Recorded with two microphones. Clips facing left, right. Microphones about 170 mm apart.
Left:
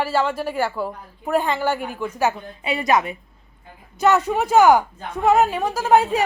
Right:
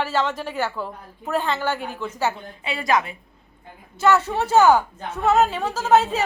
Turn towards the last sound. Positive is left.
turn(degrees=15)  # may be behind; listen again after turning